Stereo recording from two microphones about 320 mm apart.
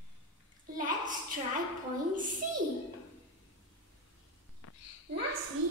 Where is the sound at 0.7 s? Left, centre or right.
Right.